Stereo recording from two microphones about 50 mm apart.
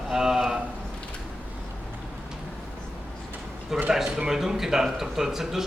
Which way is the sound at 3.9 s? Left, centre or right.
Centre.